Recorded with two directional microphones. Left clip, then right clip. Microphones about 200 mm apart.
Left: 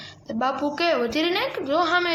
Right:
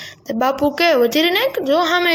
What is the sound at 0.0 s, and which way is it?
A woman's voice, 40° right (ahead or behind).